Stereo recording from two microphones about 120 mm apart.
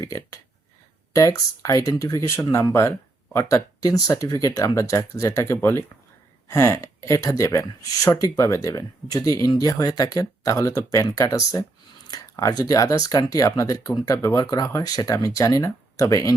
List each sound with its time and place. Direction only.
0.0 s speech: 30° left (ahead or behind)